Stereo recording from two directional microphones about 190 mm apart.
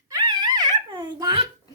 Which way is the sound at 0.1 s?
20° right (ahead or behind).